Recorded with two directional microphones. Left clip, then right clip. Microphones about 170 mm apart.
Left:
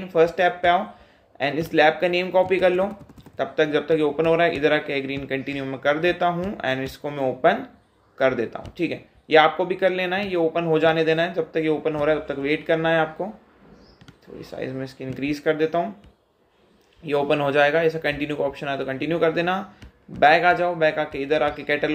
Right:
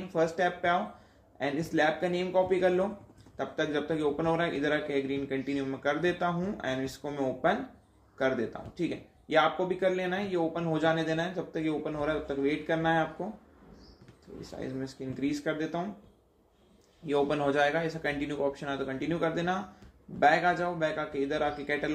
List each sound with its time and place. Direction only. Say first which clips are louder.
0.1 s a man's voice: left 10 dB; 15° left (ahead or behind)
8.8 s a man's voice: left 8 dB; 15° left (ahead or behind)
13.2 s speech: left 8 dB; 35° left (ahead or behind)
14.4 s a man's voice: left 8 dB; 15° left (ahead or behind)
17.1 s a man's voice: left 7 dB; 15° left (ahead or behind)